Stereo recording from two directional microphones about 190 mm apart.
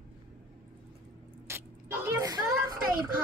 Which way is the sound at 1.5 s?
15° right (ahead or behind).